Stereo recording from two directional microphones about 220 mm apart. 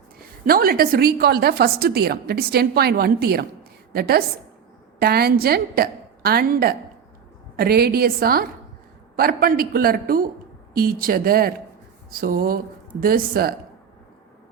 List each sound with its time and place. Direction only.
0.4 s a woman's voice: 40° right (ahead or behind)